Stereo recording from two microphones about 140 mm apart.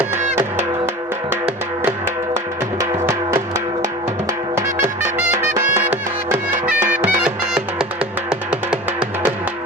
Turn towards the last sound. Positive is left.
turn(degrees=-5)  # may be behind; listen again after turning